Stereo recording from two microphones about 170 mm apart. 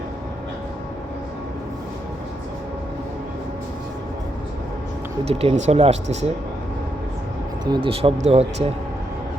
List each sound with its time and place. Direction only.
5.2 s speech: 35° right (ahead or behind)
7.6 s speech: 30° right (ahead or behind)